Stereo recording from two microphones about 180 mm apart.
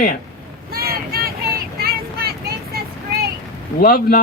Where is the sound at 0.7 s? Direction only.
60° right (ahead or behind).